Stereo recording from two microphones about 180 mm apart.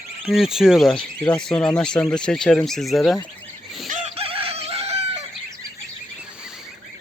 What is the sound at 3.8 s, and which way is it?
Chicken, 40° right (ahead or behind).